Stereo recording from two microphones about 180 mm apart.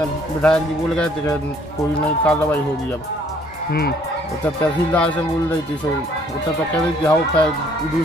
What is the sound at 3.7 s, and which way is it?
Fowl, 60° left (ahead or behind).